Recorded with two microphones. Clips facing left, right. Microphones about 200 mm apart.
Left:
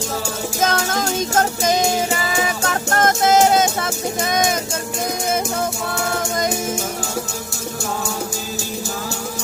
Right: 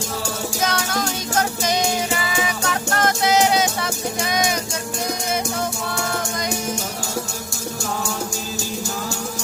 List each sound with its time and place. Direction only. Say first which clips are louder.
0.6 s music: left 4 dB; 50° left (ahead or behind)